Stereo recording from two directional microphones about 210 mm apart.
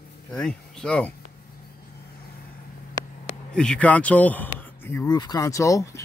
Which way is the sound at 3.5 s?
5° left (ahead or behind).